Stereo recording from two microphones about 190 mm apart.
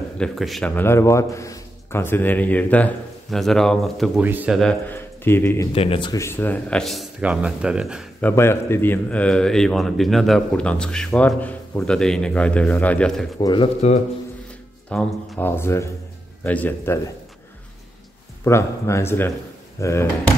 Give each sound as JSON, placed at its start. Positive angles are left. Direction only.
{"t": 0.2, "sound": "a man's voice", "side_deg": 0}
{"t": 4.6, "sound": "speech", "side_deg": 5}
{"t": 5.7, "sound": "a man's voice", "side_deg": 30}
{"t": 8.2, "sound": "a man's voice", "side_deg": 10}
{"t": 13.4, "sound": "speech", "side_deg": 20}
{"t": 14.9, "sound": "a man's voice", "side_deg": 10}
{"t": 18.4, "sound": "a man's voice", "side_deg": 15}